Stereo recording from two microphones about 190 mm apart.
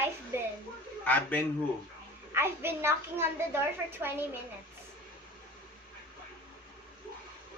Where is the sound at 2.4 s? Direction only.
15° right (ahead or behind).